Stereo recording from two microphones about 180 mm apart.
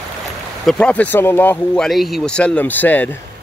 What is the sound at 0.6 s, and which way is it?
Speech, 5° left (ahead or behind).